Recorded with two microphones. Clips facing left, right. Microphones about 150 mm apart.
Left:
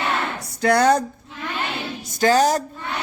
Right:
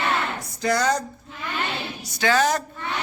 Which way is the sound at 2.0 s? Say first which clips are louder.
Left 4 dB; 45° left (ahead or behind).